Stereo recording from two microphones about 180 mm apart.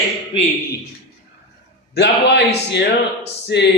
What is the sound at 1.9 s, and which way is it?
A man's voice, 70° left (ahead or behind).